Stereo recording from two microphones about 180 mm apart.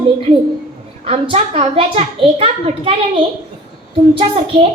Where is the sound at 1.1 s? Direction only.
30° right (ahead or behind).